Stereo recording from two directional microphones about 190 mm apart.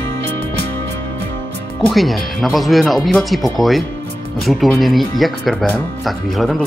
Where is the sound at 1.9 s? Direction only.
Centre (ahead or behind).